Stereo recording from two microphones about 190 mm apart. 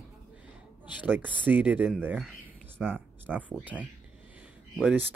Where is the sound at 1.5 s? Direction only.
10° right (ahead or behind).